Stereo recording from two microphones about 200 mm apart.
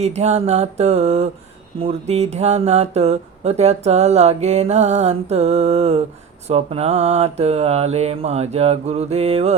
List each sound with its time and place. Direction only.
0.0 s speech: 35° right (ahead or behind)